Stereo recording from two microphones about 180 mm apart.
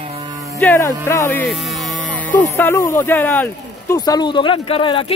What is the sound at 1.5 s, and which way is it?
Speech, centre (ahead or behind).